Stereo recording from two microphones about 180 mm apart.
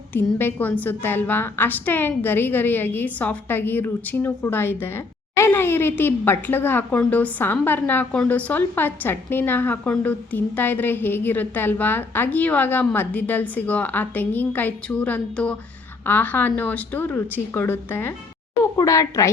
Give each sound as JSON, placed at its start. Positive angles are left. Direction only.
{"t": 0.1, "sound": "a woman's voice", "side_deg": 10}